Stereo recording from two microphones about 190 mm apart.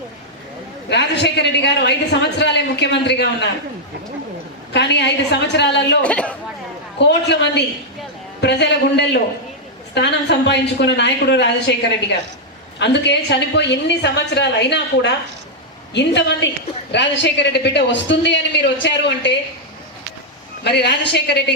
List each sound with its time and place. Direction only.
0.9 s a woman's voice: 65° left (ahead or behind)
4.7 s a woman's voice: 65° left (ahead or behind)
6.0 s a woman's voice: 5° left (ahead or behind)
7.0 s a woman's voice: 65° left (ahead or behind)
20.7 s a woman's voice: 65° left (ahead or behind)